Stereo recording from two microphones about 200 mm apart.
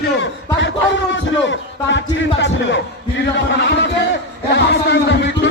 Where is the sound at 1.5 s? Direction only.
65° left (ahead or behind).